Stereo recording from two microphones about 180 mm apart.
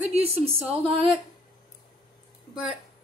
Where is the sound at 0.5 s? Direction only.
10° right (ahead or behind).